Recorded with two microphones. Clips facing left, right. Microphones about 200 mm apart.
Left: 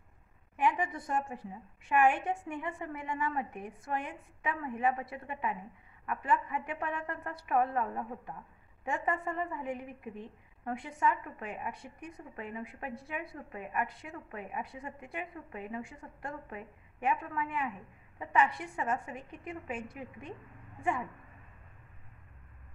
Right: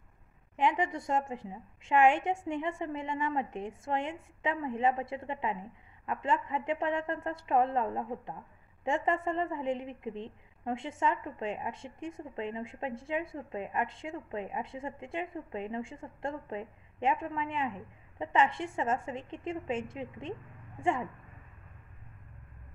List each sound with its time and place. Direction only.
0.6 s a woman's voice: 20° right (ahead or behind)